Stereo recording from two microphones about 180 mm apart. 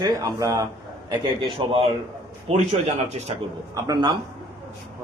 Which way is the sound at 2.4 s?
35° right (ahead or behind).